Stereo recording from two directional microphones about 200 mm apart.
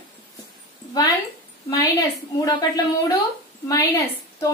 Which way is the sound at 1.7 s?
20° left (ahead or behind).